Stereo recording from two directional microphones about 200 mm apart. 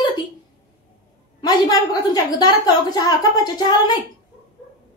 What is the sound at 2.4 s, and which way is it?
A woman's voice, 20° left (ahead or behind).